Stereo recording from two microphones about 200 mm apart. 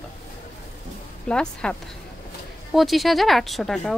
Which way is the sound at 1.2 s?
5° left (ahead or behind).